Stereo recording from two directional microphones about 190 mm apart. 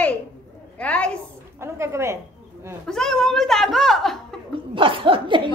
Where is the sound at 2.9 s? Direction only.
Centre (ahead or behind).